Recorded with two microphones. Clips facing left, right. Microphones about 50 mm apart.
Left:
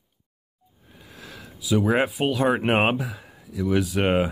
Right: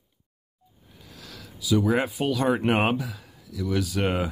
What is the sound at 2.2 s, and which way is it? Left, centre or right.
Speech, left.